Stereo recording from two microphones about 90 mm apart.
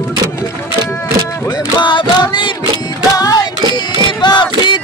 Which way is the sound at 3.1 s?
45° left (ahead or behind).